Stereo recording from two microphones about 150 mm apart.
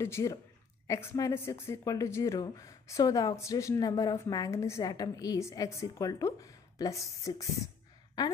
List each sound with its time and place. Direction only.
0.0 s a woman's voice: 20° left (ahead or behind)